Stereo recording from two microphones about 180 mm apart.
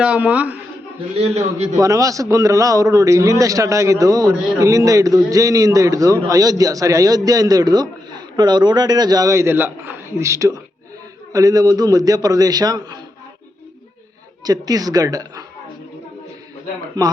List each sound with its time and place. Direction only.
0.0 s a woman's voice: 5° right (ahead or behind)
1.5 s a man's voice: 40° right (ahead or behind)
1.8 s a man's voice: 20° right (ahead or behind)
14.4 s a man's voice: 20° right (ahead or behind)
16.9 s a man's voice: 25° right (ahead or behind)